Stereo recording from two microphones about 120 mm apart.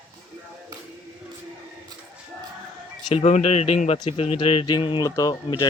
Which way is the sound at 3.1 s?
65° left (ahead or behind).